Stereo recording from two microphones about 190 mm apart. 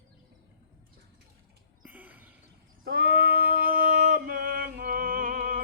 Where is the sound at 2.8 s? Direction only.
55° right (ahead or behind).